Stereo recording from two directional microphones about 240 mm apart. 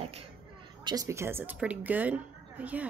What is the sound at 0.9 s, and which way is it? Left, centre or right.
A woman's voice, centre.